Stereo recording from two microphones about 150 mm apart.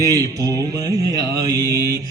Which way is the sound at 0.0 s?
25° right (ahead or behind).